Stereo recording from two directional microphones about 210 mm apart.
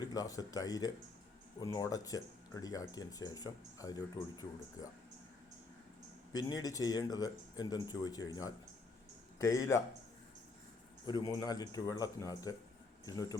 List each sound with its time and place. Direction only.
0.0 s speech: 15° left (ahead or behind)
6.3 s speech: 20° left (ahead or behind)
11.0 s speech: 20° left (ahead or behind)